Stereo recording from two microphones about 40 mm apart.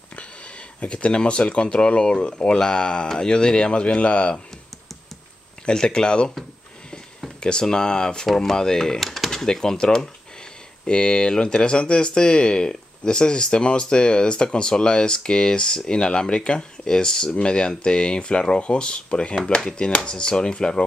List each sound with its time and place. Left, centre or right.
0.8 s speech: left
5.7 s speech: centre
7.3 s speech: centre
9.0 s a sound: centre
9.3 s speech: centre